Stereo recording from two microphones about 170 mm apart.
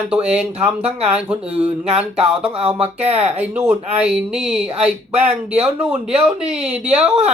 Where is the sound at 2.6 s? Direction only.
35° right (ahead or behind).